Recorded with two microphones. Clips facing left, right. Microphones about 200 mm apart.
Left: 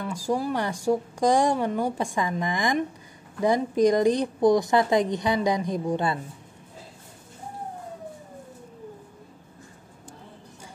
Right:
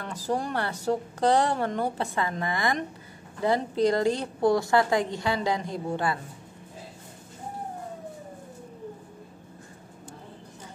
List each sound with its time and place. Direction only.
0.0 s speech: 10° left (ahead or behind)